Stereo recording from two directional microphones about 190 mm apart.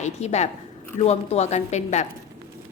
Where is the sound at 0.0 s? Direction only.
35° left (ahead or behind).